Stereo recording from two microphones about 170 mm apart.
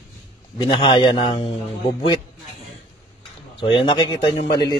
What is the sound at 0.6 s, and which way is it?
Speech, 30° left (ahead or behind).